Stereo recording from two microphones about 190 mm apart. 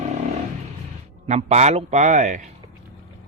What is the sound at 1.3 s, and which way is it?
A man's voice, 35° right (ahead or behind).